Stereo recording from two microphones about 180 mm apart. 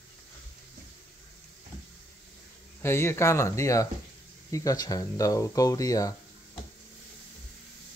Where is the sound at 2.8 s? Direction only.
15° left (ahead or behind).